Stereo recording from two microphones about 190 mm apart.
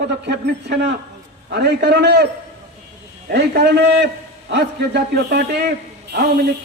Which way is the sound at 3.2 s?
60° right (ahead or behind).